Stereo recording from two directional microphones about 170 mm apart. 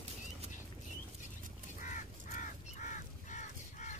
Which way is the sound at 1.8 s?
50° left (ahead or behind).